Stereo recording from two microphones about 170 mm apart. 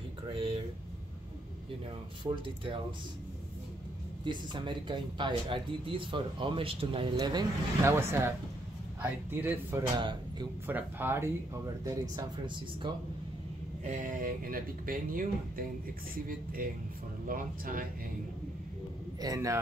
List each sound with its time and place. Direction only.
0.3 s a sound: 30° right (ahead or behind)
2.2 s speech: 30° right (ahead or behind)
4.2 s speech: 30° right (ahead or behind)
13.8 s speech: 50° right (ahead or behind)
17.3 s speech: 55° right (ahead or behind)
19.2 s speech: 20° right (ahead or behind)